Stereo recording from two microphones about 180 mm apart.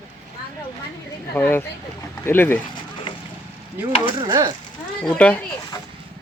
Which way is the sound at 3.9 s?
30° left (ahead or behind).